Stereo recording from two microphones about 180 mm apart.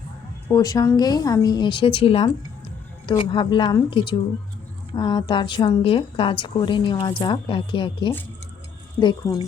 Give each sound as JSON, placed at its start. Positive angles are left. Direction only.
{"t": 0.4, "sound": "a woman's voice", "side_deg": 20}